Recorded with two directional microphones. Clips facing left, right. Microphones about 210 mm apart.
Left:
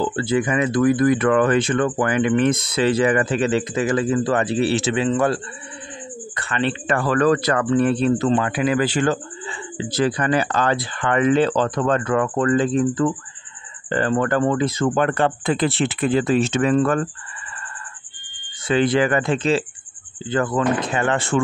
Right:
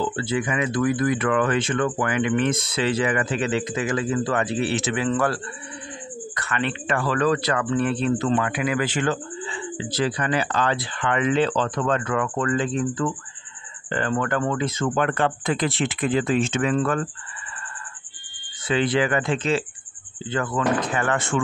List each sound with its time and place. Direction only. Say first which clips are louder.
0.0 s speech: left 4 dB; 40° left (ahead or behind)
18.7 s speech: left 4 dB; 45° left (ahead or behind); by 21.4 s 30° left (ahead or behind)